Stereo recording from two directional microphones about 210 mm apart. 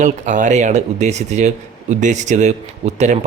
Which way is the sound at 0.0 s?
35° right (ahead or behind).